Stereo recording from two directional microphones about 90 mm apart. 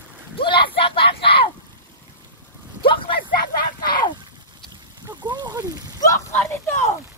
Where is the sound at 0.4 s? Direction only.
60° left (ahead or behind).